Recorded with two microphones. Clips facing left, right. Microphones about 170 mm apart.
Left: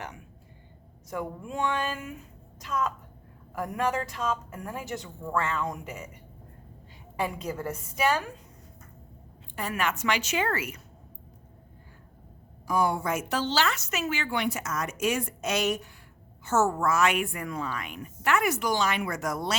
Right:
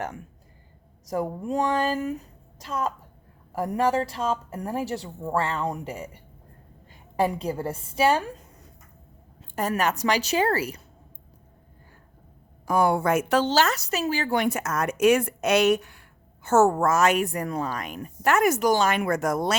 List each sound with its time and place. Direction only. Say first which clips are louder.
1.0 s a woman's voice: right 7 dB; 35° right (ahead or behind)
7.2 s a woman's voice: right 6 dB; 35° right (ahead or behind)
9.6 s a woman's voice: right 5 dB; 40° right (ahead or behind)
12.6 s speech: right 5 dB; 60° right (ahead or behind)
13.5 s speech: right 5 dB; 45° right (ahead or behind); by 16.0 s 65° right (ahead or behind)
16.4 s a woman's voice: right 6 dB; 50° right (ahead or behind)